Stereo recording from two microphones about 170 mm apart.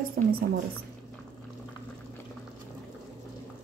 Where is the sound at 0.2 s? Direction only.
60° right (ahead or behind).